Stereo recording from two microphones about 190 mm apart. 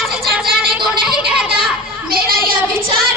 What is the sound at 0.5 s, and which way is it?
Music, centre (ahead or behind).